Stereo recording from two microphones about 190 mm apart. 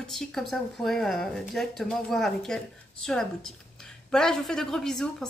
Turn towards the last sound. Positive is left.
turn(degrees=5)  # may be behind; listen again after turning